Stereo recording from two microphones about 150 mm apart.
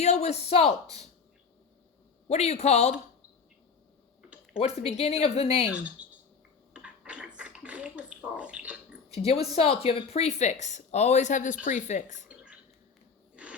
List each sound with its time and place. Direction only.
0.0 s speech: 45° left (ahead or behind)
2.2 s speech: 45° left (ahead or behind)
4.5 s speech: 40° left (ahead or behind)
5.7 s speech: 10° right (ahead or behind)
6.7 s a sound: 10° right (ahead or behind)
9.0 s a woman's voice: 45° left (ahead or behind)
12.3 s a sound: 10° right (ahead or behind)